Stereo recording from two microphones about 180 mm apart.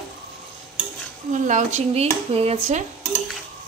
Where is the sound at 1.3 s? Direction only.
45° right (ahead or behind).